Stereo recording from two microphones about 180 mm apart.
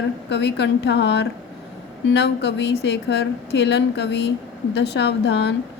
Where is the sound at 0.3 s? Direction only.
70° left (ahead or behind).